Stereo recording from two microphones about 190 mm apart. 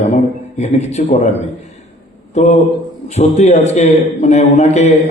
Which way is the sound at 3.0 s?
35° left (ahead or behind).